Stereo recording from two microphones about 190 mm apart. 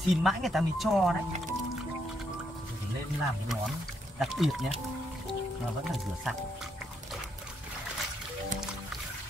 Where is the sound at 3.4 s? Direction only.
Centre (ahead or behind).